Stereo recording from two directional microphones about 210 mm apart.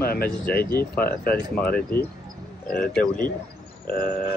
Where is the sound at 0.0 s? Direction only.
45° left (ahead or behind).